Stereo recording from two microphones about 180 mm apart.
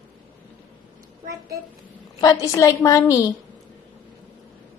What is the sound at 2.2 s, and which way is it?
A woman's voice, 20° left (ahead or behind).